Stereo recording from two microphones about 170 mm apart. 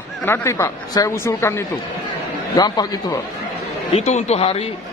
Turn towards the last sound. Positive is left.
turn(degrees=35)  # may be behind; listen again after turning